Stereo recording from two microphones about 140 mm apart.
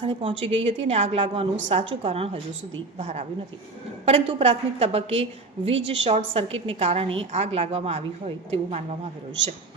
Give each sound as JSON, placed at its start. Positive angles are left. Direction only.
{"t": 0.0, "sound": "a woman's voice", "side_deg": -45}